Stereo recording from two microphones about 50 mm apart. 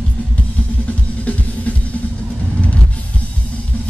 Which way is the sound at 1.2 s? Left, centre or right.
Left.